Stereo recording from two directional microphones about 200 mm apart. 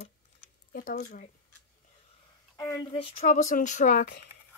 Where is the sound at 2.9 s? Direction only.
35° left (ahead or behind).